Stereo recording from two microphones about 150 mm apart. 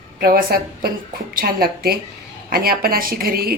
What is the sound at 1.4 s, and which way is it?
Speech, 85° right.